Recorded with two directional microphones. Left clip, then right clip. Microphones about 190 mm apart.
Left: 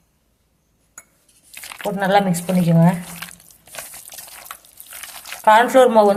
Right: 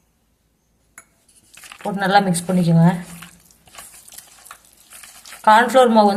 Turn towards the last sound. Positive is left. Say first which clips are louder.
# left 1 dB
turn(degrees=10)  # may be behind; listen again after turning